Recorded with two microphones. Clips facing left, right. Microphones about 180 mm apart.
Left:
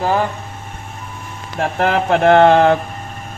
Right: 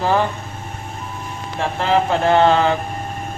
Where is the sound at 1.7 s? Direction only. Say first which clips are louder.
Left 2 dB; 60° left (ahead or behind).